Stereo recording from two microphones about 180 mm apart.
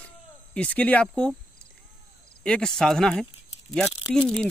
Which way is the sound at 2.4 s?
5° left (ahead or behind).